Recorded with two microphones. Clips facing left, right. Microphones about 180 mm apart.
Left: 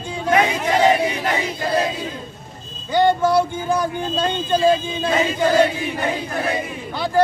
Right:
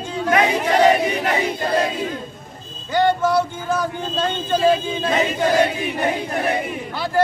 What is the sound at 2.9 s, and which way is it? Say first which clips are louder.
Speech: left 1 dB; 15° left (ahead or behind).